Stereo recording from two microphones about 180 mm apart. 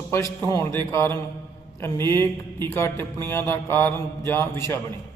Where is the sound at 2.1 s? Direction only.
15° left (ahead or behind).